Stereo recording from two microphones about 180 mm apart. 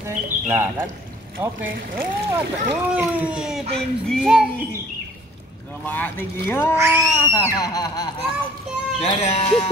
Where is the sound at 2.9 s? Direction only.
5° right (ahead or behind).